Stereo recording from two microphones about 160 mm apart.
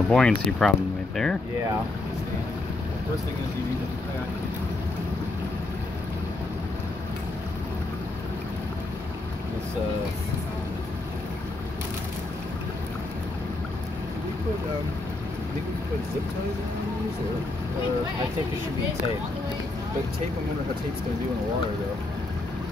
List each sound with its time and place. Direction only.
0.1 s speech: 5° left (ahead or behind)